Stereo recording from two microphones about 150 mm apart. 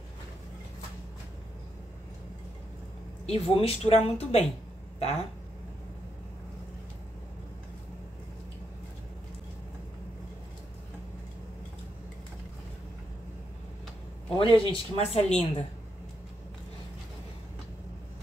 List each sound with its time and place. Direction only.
3.3 s speech: 40° left (ahead or behind)
14.3 s speech: 35° left (ahead or behind)